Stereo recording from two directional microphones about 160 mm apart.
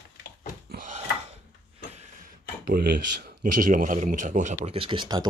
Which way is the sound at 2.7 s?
65° right (ahead or behind).